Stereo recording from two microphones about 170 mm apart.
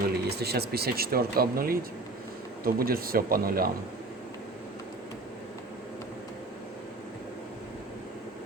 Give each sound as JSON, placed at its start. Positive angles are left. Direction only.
{"t": 0.1, "sound": "speech", "side_deg": -70}